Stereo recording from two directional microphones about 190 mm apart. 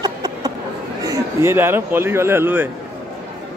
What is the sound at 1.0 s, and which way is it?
Speech, 10° right (ahead or behind).